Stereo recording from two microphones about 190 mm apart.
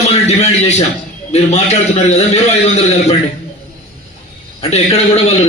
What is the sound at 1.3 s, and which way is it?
A man's voice, 35° left (ahead or behind).